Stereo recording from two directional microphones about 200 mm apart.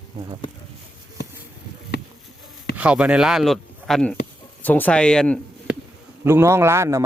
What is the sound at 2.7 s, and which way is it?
Speech, 5° right (ahead or behind).